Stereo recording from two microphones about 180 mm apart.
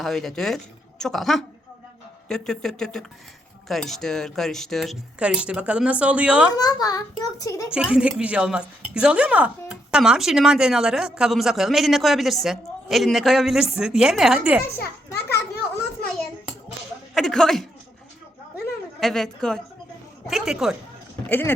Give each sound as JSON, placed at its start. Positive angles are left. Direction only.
{"t": 0.0, "sound": "a woman's voice", "side_deg": 0}
{"t": 6.6, "sound": "a child's voice", "side_deg": 20}
{"t": 7.7, "sound": "a woman's voice", "side_deg": -5}
{"t": 17.2, "sound": "a woman's voice", "side_deg": 0}
{"t": 18.9, "sound": "a woman's voice", "side_deg": 0}
{"t": 21.2, "sound": "speech", "side_deg": 10}